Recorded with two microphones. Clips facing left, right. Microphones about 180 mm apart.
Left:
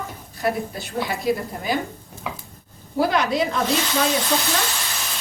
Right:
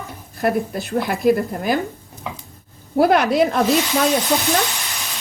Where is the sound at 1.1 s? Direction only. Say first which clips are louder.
Right 7 dB; 55° right (ahead or behind).